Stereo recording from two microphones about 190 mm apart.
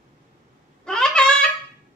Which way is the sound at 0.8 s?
5° left (ahead or behind).